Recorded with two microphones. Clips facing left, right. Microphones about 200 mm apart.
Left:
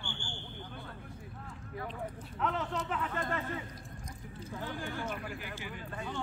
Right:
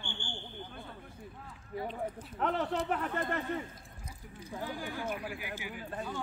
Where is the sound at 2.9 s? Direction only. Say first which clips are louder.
Right 2 dB; 55° right (ahead or behind).